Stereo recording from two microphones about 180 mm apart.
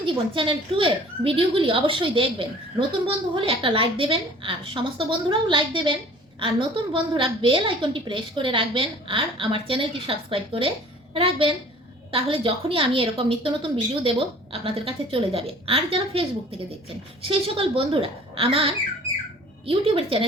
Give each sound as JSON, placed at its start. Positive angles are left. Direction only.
{"t": 0.0, "sound": "a woman's voice", "side_deg": -30}